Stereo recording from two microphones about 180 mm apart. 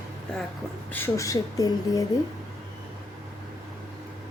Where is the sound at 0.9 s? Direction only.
15° left (ahead or behind).